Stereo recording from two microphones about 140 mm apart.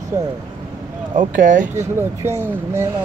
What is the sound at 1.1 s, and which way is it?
Speech, 65° right (ahead or behind).